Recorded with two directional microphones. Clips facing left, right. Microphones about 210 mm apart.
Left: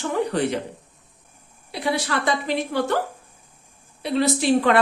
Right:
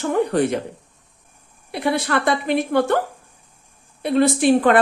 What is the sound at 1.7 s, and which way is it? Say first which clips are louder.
A woman's voice: right 4 dB; 55° right (ahead or behind).